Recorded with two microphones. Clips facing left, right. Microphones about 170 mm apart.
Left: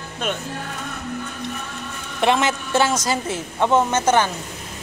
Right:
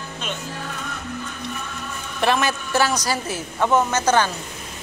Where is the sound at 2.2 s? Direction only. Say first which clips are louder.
Left 2 dB; 20° left (ahead or behind).